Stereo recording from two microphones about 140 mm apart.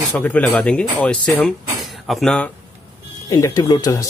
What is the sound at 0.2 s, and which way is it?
Speech, 10° left (ahead or behind).